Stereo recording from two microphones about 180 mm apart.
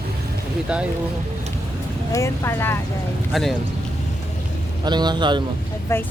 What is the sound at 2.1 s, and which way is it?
Speech, 15° left (ahead or behind).